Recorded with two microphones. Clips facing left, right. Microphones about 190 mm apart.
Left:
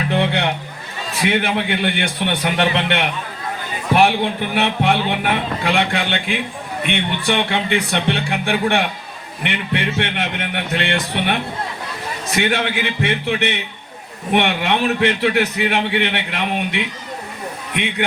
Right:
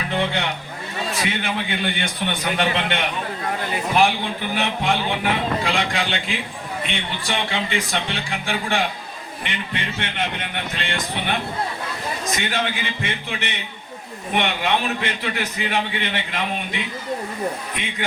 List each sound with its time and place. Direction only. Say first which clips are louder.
0.2 s music: left 3 dB; 60° left (ahead or behind)
1.3 s speech: left 6 dB; 60° left (ahead or behind)
12.4 s speech: left 10 dB; 60° left (ahead or behind)